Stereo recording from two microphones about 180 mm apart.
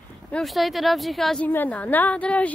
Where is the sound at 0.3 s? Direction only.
Centre (ahead or behind).